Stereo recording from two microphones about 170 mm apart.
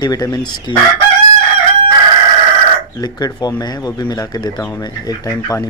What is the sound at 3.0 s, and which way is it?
Speech, 25° left (ahead or behind).